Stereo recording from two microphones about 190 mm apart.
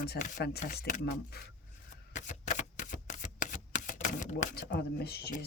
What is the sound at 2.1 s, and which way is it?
Shuffling cards, 40° left (ahead or behind).